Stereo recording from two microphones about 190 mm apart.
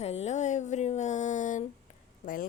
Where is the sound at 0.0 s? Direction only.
35° left (ahead or behind).